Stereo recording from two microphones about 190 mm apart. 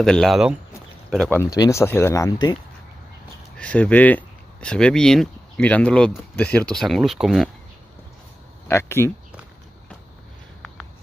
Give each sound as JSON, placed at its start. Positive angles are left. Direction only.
{"t": 0.0, "sound": "speech", "side_deg": 5}
{"t": 1.4, "sound": "speech", "side_deg": 15}
{"t": 3.5, "sound": "speech", "side_deg": 5}
{"t": 8.6, "sound": "speech", "side_deg": 15}